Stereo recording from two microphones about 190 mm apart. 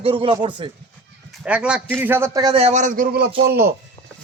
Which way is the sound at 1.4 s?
5° right (ahead or behind).